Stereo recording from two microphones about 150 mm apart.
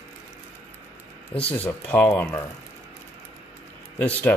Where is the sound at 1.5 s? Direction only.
10° left (ahead or behind).